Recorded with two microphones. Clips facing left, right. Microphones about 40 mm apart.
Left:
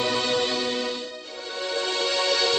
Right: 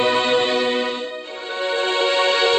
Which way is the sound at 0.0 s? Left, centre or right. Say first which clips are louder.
Right 7 dB; right.